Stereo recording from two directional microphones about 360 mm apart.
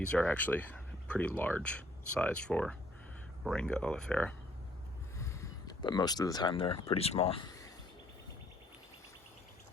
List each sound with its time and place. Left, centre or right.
0.1 s speech: centre
5.1 s a sound: centre
6.8 s speech: centre